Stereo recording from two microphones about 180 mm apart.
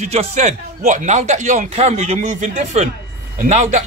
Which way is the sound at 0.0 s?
40° right (ahead or behind).